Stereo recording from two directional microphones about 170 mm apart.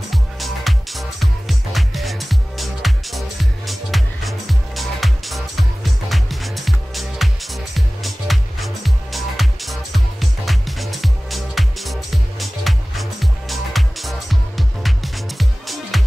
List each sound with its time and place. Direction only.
0.1 s music: centre (ahead or behind)